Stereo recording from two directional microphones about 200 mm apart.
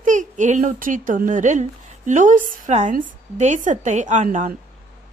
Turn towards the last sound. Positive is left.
turn(degrees=-40)  # may be behind; listen again after turning